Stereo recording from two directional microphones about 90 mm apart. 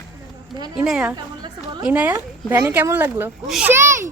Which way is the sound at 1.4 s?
55° right (ahead or behind).